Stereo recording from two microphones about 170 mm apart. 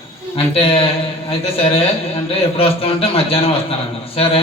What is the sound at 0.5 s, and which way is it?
Speech, 35° left (ahead or behind).